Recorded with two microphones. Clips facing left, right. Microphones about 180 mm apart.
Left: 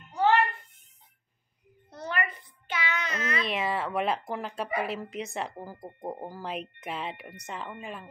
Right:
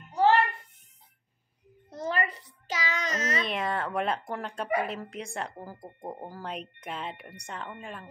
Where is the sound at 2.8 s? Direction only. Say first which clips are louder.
Right 1 dB; 40° right (ahead or behind).